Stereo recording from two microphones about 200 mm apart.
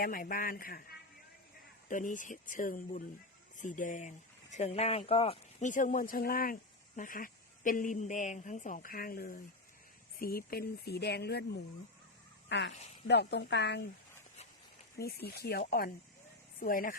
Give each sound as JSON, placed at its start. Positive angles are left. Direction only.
{"t": 0.0, "sound": "speech", "side_deg": 45}
{"t": 1.9, "sound": "speech", "side_deg": 40}
{"t": 12.5, "sound": "a woman's voice", "side_deg": 60}
{"t": 14.9, "sound": "speech", "side_deg": 50}